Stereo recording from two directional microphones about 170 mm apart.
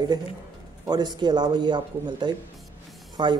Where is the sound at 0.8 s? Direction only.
25° right (ahead or behind).